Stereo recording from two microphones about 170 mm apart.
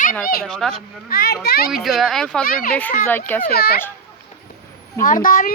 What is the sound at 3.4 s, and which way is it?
Speech, 65° left (ahead or behind).